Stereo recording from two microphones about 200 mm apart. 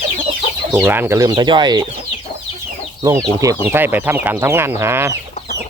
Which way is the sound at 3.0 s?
15° right (ahead or behind).